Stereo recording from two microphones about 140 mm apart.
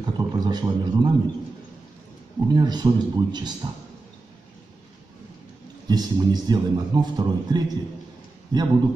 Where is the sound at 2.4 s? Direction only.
30° right (ahead or behind).